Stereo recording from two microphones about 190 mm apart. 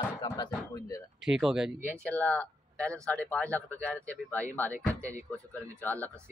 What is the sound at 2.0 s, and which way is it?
Speech, 10° left (ahead or behind).